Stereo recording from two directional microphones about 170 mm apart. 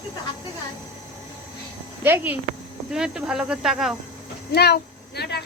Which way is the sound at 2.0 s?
10° right (ahead or behind).